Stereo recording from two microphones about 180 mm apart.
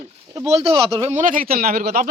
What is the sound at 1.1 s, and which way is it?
Speech, 45° right (ahead or behind).